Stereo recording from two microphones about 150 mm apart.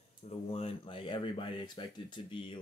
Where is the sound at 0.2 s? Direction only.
40° left (ahead or behind).